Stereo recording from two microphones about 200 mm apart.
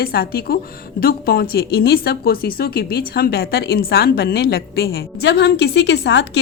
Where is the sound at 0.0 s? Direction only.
50° left (ahead or behind).